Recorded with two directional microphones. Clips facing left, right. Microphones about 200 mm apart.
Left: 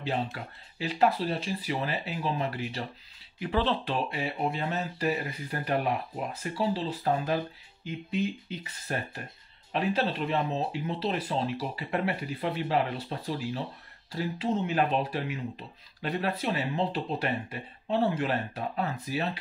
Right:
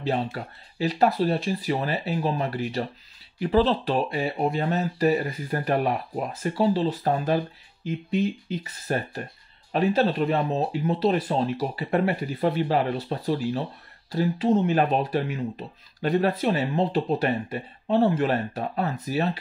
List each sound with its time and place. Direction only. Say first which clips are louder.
0.0 s speech: right 5 dB; 40° right (ahead or behind)
8.5 s speech: right 7 dB; 40° right (ahead or behind)
14.1 s speech: right 8 dB; 45° right (ahead or behind)